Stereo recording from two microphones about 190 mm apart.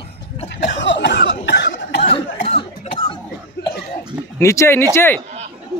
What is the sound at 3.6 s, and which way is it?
Cough, 65° left (ahead or behind).